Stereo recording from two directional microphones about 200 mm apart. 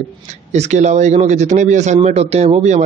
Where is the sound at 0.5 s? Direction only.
35° right (ahead or behind).